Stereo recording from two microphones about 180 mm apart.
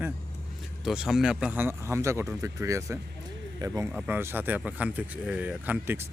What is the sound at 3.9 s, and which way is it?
Speech, 10° right (ahead or behind).